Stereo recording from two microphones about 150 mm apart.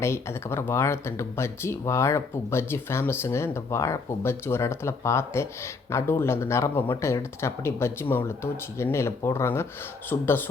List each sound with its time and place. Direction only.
0.0 s speech: 15° left (ahead or behind)